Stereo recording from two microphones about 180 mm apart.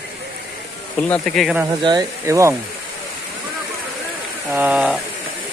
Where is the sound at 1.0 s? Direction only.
5° left (ahead or behind).